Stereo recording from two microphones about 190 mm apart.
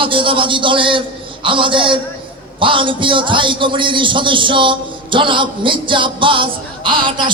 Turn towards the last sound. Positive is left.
turn(degrees=-25)  # may be behind; listen again after turning